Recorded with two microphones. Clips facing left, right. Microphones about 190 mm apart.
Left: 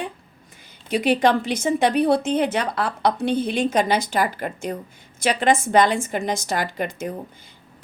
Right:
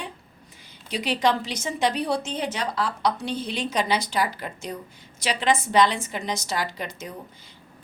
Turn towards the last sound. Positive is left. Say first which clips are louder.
# left 6 dB
turn(degrees=55)  # may be behind; listen again after turning